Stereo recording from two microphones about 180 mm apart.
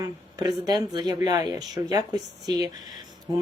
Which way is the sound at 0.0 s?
20° right (ahead or behind).